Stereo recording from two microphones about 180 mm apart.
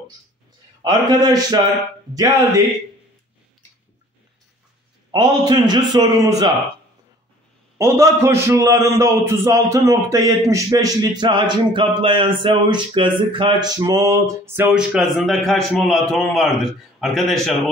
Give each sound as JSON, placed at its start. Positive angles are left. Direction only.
{"t": 0.8, "sound": "a man's voice", "side_deg": -20}
{"t": 5.5, "sound": "a man's voice", "side_deg": -20}
{"t": 7.7, "sound": "a man's voice", "side_deg": -15}